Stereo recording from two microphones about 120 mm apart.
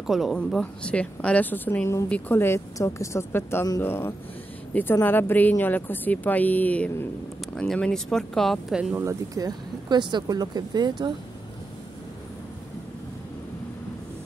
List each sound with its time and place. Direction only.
0.0 s speech: centre (ahead or behind)
0.4 s a woman's voice: 10° left (ahead or behind)
8.9 s speech: 25° right (ahead or behind)